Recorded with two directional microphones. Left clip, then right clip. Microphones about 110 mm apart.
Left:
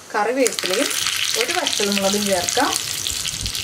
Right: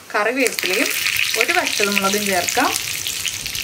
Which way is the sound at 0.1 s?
25° right (ahead or behind).